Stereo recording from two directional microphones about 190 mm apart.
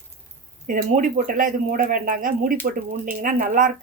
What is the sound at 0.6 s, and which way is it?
Speech, 40° right (ahead or behind).